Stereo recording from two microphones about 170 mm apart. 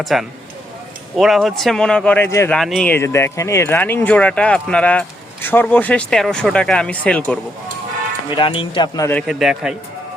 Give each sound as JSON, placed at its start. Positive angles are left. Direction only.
{"t": 0.0, "sound": "speech", "side_deg": 0}
{"t": 2.6, "sound": "speech", "side_deg": 0}
{"t": 8.3, "sound": "speech", "side_deg": 30}
{"t": 9.2, "sound": "speech", "side_deg": -5}